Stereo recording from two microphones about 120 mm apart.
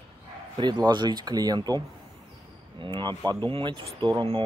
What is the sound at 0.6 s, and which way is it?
Speech, 35° right (ahead or behind).